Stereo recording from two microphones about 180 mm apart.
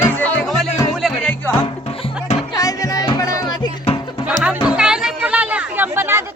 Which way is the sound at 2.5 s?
20° left (ahead or behind).